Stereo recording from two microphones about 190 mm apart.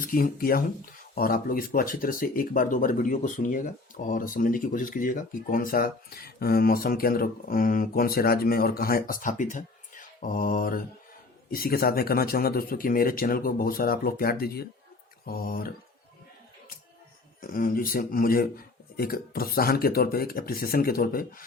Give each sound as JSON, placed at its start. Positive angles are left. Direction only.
{"t": 0.0, "sound": "speech", "side_deg": 50}
{"t": 17.4, "sound": "speech", "side_deg": 45}